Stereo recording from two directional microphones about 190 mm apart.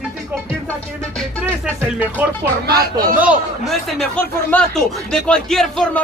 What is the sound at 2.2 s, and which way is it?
Speech, 5° right (ahead or behind).